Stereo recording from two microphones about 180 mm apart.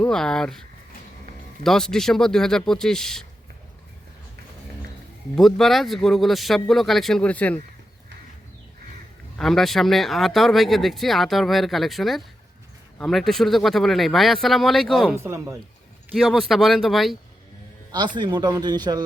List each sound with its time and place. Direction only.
0.0 s speech: 5° left (ahead or behind)
1.6 s speech: 5° left (ahead or behind)
5.4 s speech: centre (ahead or behind)
9.4 s speech: centre (ahead or behind)
15.1 s speech: 15° right (ahead or behind)
16.1 s speech: centre (ahead or behind)
18.2 s speech: 25° right (ahead or behind)